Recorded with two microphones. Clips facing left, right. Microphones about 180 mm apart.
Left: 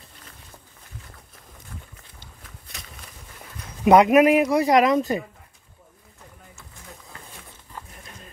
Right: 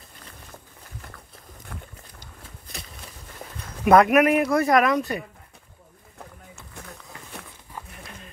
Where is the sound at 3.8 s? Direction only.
15° left (ahead or behind).